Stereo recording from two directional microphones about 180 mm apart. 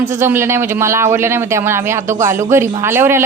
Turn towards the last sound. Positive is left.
turn(degrees=-15)  # may be behind; listen again after turning